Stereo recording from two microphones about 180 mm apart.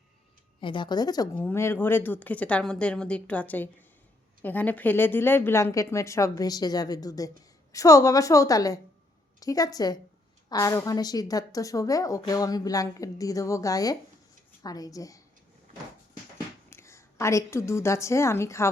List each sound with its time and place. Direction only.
0.6 s a woman's voice: 25° left (ahead or behind)
16.6 s a woman's voice: 15° left (ahead or behind)